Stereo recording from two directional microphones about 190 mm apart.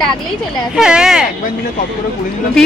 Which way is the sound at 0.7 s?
5° right (ahead or behind).